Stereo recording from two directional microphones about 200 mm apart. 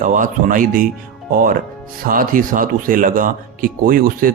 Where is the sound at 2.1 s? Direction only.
45° right (ahead or behind).